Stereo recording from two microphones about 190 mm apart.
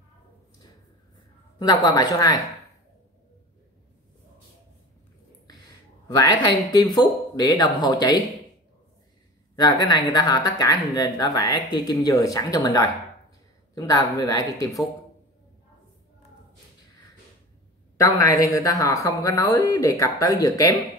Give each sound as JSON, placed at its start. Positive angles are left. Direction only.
{"t": 1.6, "sound": "speech", "side_deg": 20}
{"t": 6.0, "sound": "speech", "side_deg": 20}
{"t": 9.6, "sound": "speech", "side_deg": 20}
{"t": 17.9, "sound": "speech", "side_deg": 15}